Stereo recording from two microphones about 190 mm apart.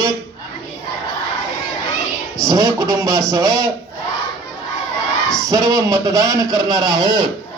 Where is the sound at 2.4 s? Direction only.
20° right (ahead or behind).